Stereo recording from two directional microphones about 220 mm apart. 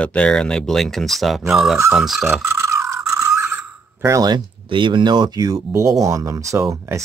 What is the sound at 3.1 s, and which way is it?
Speech, 15° right (ahead or behind).